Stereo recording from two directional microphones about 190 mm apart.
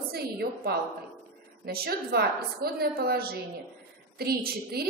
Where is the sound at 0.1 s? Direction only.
55° right (ahead or behind).